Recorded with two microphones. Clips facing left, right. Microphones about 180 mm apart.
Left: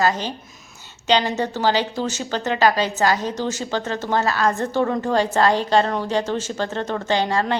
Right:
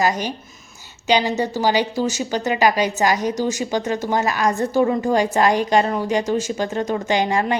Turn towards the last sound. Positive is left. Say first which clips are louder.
# right 1 dB
turn(degrees=-15)  # may be behind; listen again after turning